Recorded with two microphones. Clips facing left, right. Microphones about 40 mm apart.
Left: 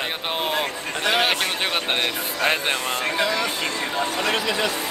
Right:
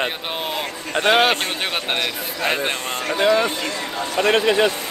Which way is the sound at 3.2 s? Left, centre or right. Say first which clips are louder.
Right 9 dB; right.